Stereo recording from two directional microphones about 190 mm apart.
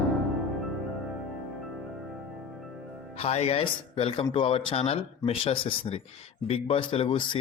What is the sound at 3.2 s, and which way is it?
Speech, 30° left (ahead or behind).